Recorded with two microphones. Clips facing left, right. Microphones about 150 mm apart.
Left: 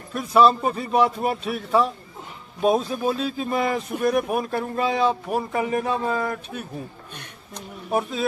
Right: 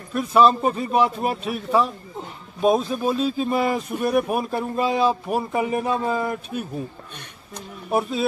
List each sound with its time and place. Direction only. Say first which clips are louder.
0.1 s speech: even; centre (ahead or behind)
0.6 s speech: right 2 dB; 20° right (ahead or behind)
0.9 s a man's voice: left 3 dB; 5° right (ahead or behind)